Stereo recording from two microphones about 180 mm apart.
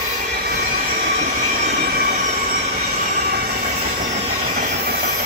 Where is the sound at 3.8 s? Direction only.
45° right (ahead or behind).